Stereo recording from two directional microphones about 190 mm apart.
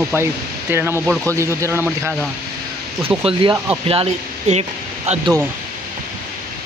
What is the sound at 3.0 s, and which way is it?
Speech, 30° right (ahead or behind).